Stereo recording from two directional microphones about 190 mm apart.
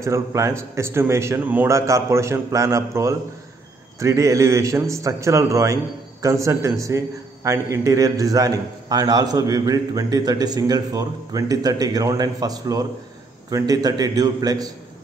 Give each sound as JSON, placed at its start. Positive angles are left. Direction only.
{"t": 0.0, "sound": "a man's voice", "side_deg": -15}